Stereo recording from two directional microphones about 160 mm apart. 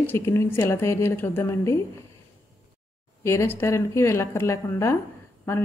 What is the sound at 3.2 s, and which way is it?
A woman's voice, 15° left (ahead or behind).